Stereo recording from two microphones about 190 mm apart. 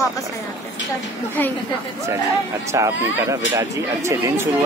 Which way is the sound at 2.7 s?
15° right (ahead or behind).